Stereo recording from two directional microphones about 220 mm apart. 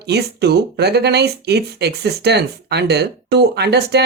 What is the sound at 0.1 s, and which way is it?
Speech, 50° right (ahead or behind).